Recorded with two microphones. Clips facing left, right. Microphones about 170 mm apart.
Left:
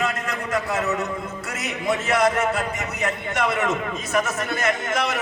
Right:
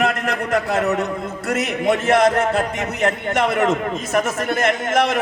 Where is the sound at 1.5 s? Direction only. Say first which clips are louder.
Right 7 dB; 55° right (ahead or behind).